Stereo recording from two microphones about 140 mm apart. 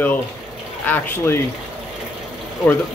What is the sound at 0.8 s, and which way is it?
Speech, 15° left (ahead or behind).